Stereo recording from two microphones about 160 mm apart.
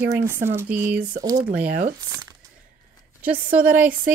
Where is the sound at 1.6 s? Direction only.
75° right (ahead or behind).